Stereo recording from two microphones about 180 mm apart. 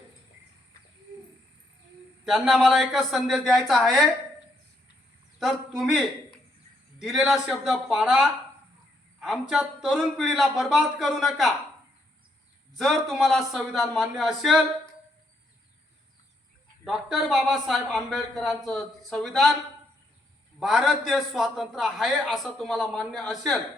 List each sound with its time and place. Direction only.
2.2 s speech: centre (ahead or behind)
5.4 s speech: centre (ahead or behind)
12.7 s speech: centre (ahead or behind)
16.8 s speech: centre (ahead or behind)
20.6 s speech: centre (ahead or behind)